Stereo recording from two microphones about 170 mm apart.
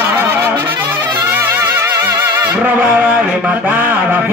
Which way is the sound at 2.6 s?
10° right (ahead or behind).